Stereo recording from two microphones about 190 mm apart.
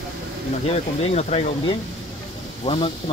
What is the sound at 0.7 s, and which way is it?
Speech, 35° left (ahead or behind).